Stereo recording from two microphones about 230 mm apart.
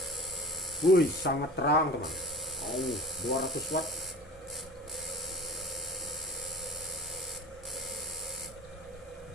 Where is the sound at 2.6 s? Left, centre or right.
Centre.